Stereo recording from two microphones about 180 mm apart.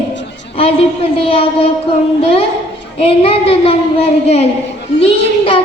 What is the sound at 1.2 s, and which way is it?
Speech, 30° left (ahead or behind).